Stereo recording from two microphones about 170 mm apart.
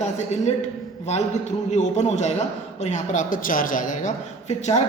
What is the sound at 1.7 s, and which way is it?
A man's voice, 40° left (ahead or behind).